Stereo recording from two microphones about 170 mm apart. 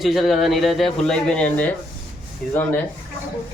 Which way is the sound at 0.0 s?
Centre (ahead or behind).